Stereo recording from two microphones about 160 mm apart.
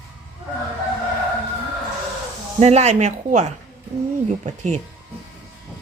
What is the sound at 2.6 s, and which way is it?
Speech, 45° right (ahead or behind).